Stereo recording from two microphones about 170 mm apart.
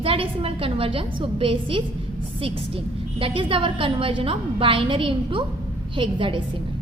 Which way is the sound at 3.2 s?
30° right (ahead or behind).